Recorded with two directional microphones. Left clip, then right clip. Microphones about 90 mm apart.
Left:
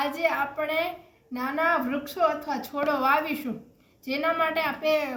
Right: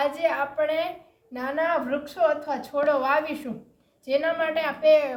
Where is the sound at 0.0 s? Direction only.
35° right (ahead or behind).